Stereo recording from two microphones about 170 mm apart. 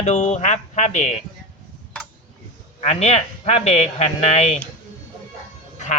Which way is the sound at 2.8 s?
40° left (ahead or behind).